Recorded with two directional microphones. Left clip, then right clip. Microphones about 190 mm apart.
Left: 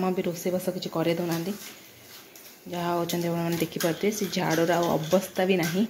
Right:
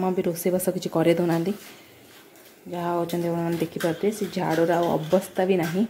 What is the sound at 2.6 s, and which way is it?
Speech, 5° right (ahead or behind).